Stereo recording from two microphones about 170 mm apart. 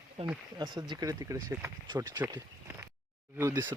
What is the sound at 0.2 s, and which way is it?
Speech, 35° right (ahead or behind).